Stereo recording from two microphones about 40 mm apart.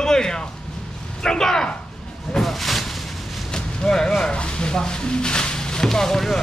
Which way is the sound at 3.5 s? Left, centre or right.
Centre.